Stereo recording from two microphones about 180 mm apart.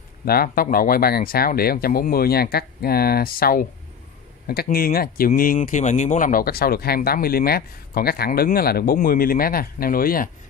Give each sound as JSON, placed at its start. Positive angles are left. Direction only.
{"t": 0.2, "sound": "speech", "side_deg": 55}
{"t": 4.6, "sound": "speech", "side_deg": 55}